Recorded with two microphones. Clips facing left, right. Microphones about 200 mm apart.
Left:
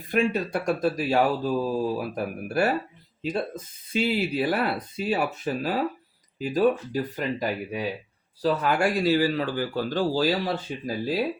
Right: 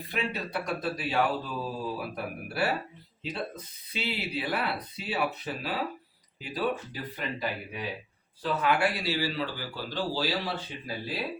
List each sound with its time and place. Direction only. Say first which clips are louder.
0.1 s speech: left 9 dB; 45° left (ahead or behind)